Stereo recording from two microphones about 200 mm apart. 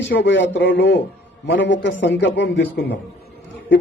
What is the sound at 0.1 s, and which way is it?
A man's voice, 65° left (ahead or behind).